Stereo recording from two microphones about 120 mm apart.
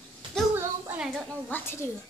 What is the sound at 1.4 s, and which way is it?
Speech, 20° left (ahead or behind).